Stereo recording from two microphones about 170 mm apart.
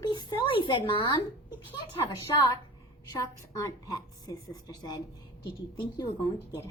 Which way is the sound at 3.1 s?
20° left (ahead or behind).